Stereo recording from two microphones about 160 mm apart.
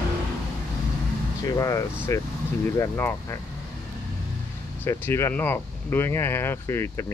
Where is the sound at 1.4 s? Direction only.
20° left (ahead or behind).